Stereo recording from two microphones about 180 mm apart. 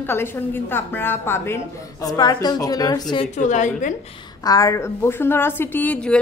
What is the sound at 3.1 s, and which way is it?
Speech, 35° left (ahead or behind).